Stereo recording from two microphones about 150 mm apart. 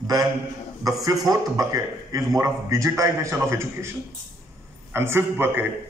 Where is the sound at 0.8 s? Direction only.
25° right (ahead or behind).